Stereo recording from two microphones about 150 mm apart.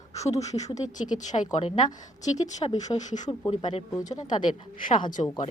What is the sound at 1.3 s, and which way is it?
Speech, 35° left (ahead or behind).